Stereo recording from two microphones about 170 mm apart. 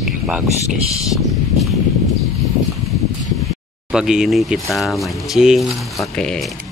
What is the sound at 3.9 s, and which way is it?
Speech, 5° right (ahead or behind).